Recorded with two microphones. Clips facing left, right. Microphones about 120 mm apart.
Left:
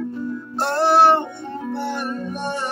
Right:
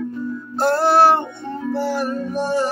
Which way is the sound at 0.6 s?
5° right (ahead or behind).